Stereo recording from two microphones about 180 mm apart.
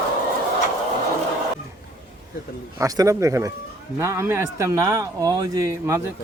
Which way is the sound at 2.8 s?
20° right (ahead or behind).